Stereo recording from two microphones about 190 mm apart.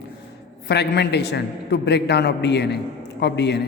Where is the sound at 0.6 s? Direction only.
60° left (ahead or behind).